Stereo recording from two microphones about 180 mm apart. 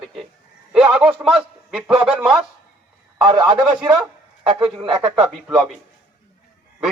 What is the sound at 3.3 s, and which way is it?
Speech, 25° right (ahead or behind).